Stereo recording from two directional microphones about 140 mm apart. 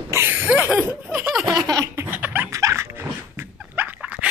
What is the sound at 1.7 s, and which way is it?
Laughter, 25° right (ahead or behind).